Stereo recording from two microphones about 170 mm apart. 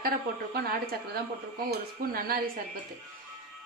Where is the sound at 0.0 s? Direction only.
65° right (ahead or behind).